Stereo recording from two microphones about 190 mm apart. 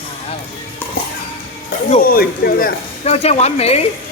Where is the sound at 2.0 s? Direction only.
50° left (ahead or behind).